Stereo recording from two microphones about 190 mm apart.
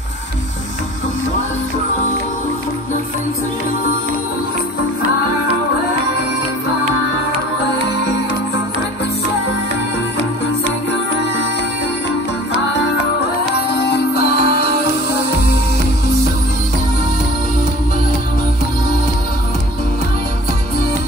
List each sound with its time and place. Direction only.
13.7 s music: 55° left (ahead or behind)